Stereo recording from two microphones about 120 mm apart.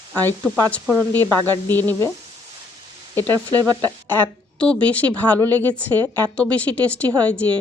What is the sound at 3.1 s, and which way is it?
Speech, 35° right (ahead or behind).